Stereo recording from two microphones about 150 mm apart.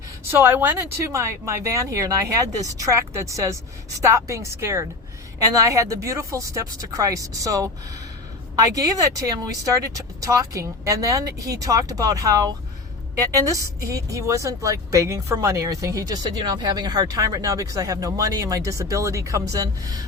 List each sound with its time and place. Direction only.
0.3 s a woman's voice: 15° right (ahead or behind)